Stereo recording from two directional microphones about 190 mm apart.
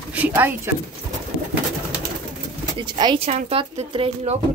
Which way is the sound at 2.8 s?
25° right (ahead or behind).